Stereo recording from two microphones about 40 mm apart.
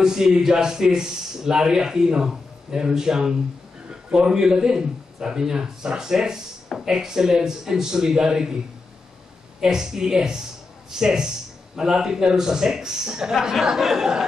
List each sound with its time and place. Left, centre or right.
0.0 s a man's voice: centre
9.6 s a man's voice: centre